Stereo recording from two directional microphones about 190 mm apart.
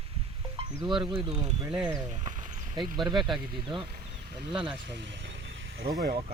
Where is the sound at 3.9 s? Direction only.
55° right (ahead or behind); by 5.9 s 75° right (ahead or behind).